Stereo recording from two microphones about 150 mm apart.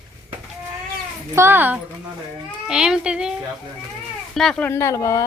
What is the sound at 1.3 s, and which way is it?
Speech, 15° right (ahead or behind).